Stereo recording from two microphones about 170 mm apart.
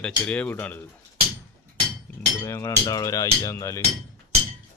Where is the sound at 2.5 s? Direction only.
15° left (ahead or behind).